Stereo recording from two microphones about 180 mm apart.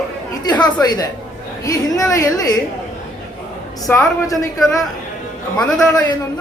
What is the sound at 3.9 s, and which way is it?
Speech, 10° left (ahead or behind).